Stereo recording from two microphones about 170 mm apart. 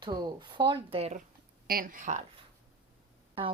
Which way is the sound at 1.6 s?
55° right (ahead or behind).